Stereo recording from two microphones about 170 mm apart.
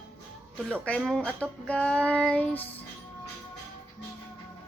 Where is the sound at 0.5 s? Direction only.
5° left (ahead or behind).